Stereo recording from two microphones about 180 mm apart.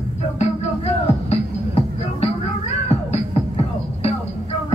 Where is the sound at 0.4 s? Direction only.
35° left (ahead or behind).